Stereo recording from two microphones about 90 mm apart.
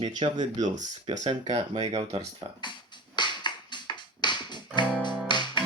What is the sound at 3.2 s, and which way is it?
Music, 55° left (ahead or behind).